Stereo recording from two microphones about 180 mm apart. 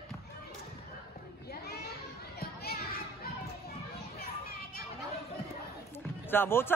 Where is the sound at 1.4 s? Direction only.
60° left (ahead or behind).